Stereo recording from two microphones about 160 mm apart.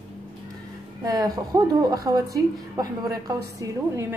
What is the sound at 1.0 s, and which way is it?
A woman's voice, 20° right (ahead or behind).